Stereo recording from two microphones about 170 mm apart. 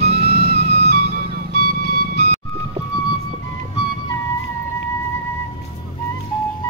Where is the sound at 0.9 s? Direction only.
75° left (ahead or behind).